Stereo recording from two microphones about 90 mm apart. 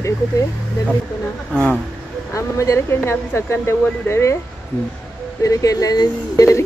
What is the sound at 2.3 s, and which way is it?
Speech, 35° left (ahead or behind).